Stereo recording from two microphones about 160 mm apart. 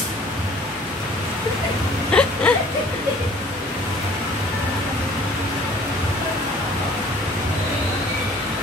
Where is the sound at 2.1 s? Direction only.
5° left (ahead or behind).